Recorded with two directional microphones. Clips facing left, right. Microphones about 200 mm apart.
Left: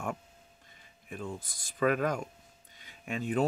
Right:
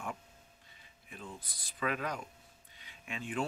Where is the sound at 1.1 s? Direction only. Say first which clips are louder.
Left 8 dB; 45° left (ahead or behind).